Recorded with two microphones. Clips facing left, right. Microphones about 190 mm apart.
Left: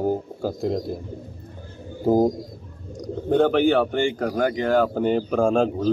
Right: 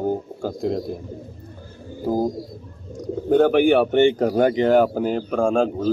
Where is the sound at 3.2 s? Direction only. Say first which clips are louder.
Right 3 dB; 5° right (ahead or behind).